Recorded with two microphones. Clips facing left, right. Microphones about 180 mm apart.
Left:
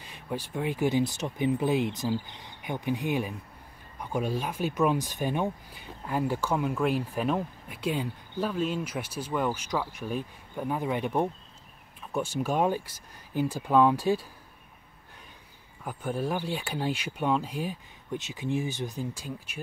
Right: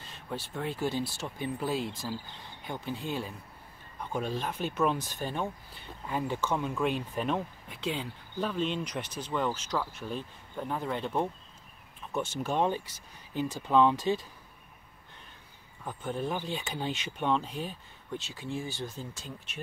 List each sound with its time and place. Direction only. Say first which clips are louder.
0.0 s speech: left 4 dB; 15° left (ahead or behind)
15.8 s speech: left 3 dB; 10° left (ahead or behind)